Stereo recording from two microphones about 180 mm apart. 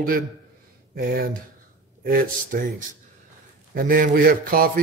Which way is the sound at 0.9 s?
55° right (ahead or behind).